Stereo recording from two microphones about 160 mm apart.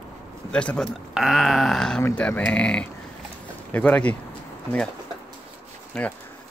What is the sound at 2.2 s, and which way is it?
Speech, 10° left (ahead or behind).